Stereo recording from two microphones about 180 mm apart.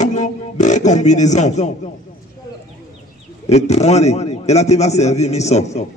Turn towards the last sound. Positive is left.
turn(degrees=40)  # may be behind; listen again after turning